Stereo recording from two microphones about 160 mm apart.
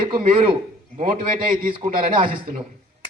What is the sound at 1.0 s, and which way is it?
A man's voice, 55° right (ahead or behind).